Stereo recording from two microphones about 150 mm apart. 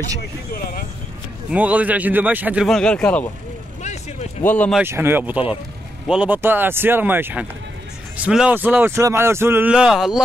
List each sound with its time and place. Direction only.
1.5 s a man's voice: 10° right (ahead or behind)
2.7 s speech: 5° left (ahead or behind)
3.8 s a sound: 50° left (ahead or behind)
4.4 s speech: 10° left (ahead or behind)
4.8 s a man's voice: 15° right (ahead or behind)